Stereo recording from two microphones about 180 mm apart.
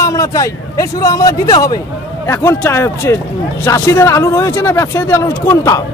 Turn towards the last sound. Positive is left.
turn(degrees=15)  # may be behind; listen again after turning